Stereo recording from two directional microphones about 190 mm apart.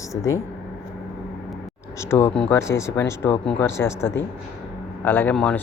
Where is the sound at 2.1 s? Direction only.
10° left (ahead or behind).